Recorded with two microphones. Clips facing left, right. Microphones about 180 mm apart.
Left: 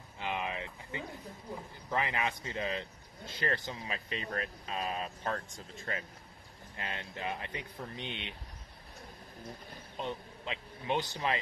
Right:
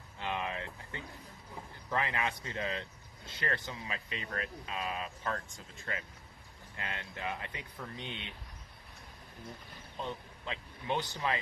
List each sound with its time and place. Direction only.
0.2 s a sound: 15° left (ahead or behind)
1.9 s speech: 20° left (ahead or behind)
6.8 s speech: 25° left (ahead or behind)
9.9 s speech: 20° left (ahead or behind)